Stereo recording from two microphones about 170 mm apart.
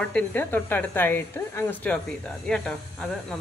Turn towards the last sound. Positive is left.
turn(degrees=5)  # may be behind; listen again after turning